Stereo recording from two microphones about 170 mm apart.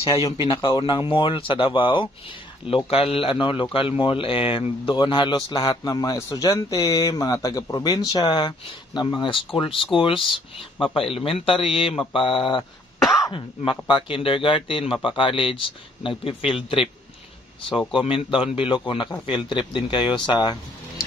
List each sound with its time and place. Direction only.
0.1 s speech: 25° left (ahead or behind)
13.0 s cough: centre (ahead or behind)
13.8 s speech: 30° left (ahead or behind)
17.9 s speech: 30° left (ahead or behind)